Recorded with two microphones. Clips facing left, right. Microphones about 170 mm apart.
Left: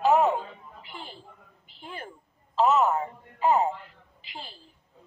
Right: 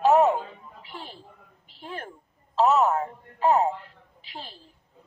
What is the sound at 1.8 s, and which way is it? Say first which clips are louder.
A woman's voice: right 3 dB; centre (ahead or behind).